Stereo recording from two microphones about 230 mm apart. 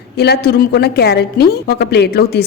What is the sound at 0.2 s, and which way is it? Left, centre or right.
A woman's voice, left.